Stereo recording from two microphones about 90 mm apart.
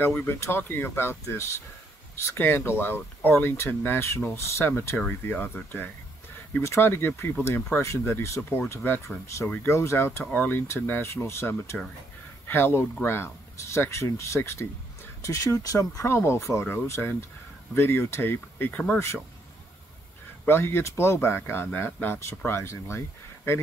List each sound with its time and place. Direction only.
0.0 s speech: 25° left (ahead or behind)
10.3 s speech: 20° left (ahead or behind)
20.4 s speech: 25° left (ahead or behind)